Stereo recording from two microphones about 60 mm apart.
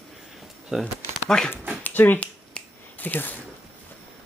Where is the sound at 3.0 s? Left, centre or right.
Left.